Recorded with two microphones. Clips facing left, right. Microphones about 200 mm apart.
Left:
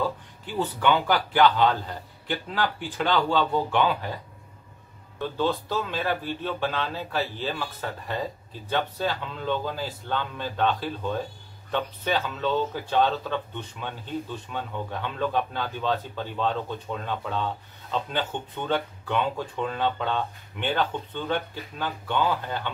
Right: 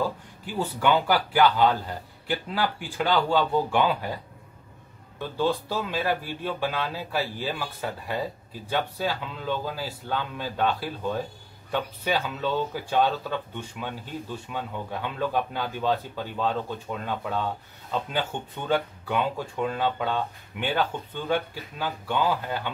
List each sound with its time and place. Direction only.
0.6 s a man's voice: 10° right (ahead or behind)
5.4 s a man's voice: 10° right (ahead or behind)